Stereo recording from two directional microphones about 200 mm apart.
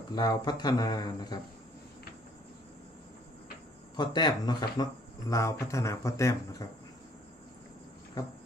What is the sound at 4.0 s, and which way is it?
A man's voice, 20° left (ahead or behind).